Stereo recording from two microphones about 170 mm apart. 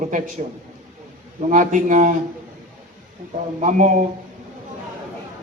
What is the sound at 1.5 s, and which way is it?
Speech, 50° right (ahead or behind).